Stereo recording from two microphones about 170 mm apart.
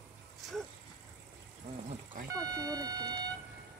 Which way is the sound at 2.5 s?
20° right (ahead or behind).